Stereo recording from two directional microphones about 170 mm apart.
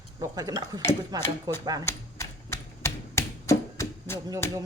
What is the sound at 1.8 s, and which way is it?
Typewriter, 15° left (ahead or behind).